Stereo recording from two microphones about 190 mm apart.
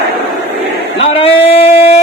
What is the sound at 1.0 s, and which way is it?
Speech, 30° left (ahead or behind).